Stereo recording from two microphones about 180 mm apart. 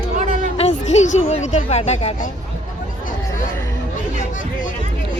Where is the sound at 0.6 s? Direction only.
35° left (ahead or behind).